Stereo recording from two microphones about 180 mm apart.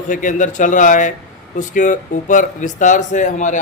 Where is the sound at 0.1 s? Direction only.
45° left (ahead or behind).